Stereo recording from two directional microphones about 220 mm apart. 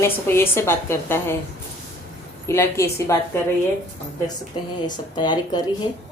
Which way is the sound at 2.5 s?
10° left (ahead or behind).